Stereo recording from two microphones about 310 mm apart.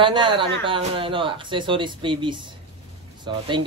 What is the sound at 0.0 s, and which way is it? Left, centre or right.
Speech, centre.